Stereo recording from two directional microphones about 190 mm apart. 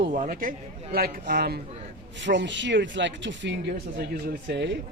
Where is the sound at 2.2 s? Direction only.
70° right (ahead or behind).